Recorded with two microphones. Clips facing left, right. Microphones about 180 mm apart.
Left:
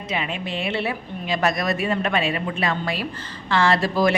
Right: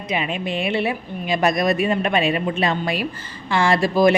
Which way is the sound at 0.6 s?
15° right (ahead or behind).